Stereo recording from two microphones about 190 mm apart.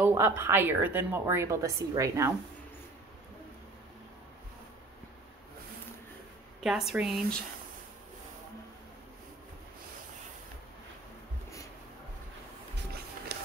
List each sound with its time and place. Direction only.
0.0 s a woman's voice: 10° right (ahead or behind)
6.6 s a woman's voice: centre (ahead or behind)
13.3 s a sound: 60° right (ahead or behind)